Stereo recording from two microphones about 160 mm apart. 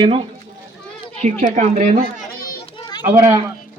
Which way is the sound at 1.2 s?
45° right (ahead or behind).